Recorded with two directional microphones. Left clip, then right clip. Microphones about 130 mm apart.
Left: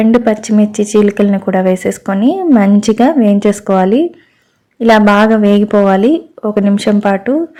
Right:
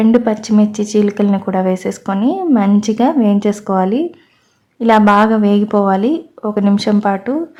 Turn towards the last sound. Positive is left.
turn(degrees=20)  # may be behind; listen again after turning